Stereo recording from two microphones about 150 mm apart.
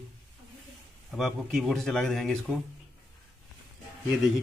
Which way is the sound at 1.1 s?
Centre (ahead or behind).